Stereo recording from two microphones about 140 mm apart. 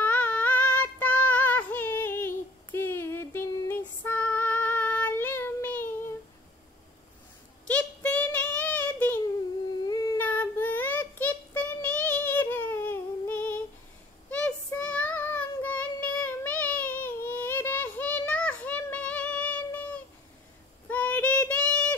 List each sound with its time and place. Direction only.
0.0 s child singing: 10° left (ahead or behind)
7.6 s child singing: 10° left (ahead or behind)
9.8 s humming: 25° left (ahead or behind)
10.2 s child singing: 15° left (ahead or behind)